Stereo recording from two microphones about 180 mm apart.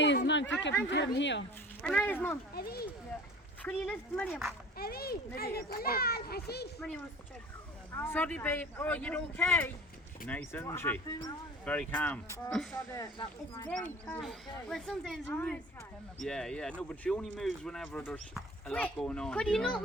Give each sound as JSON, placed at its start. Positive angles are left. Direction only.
{"t": 0.3, "sound": "speech", "side_deg": 85}
{"t": 1.8, "sound": "speech", "side_deg": 5}
{"t": 2.6, "sound": "a child's voice", "side_deg": 60}
{"t": 3.6, "sound": "speech", "side_deg": 10}
{"t": 4.8, "sound": "a child's voice", "side_deg": 60}
{"t": 6.7, "sound": "speech", "side_deg": 5}
{"t": 13.0, "sound": "speech", "side_deg": 25}
{"t": 13.7, "sound": "speech", "side_deg": 5}